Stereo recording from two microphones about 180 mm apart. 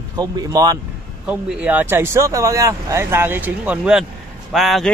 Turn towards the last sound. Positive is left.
turn(degrees=0)  # may be behind; listen again after turning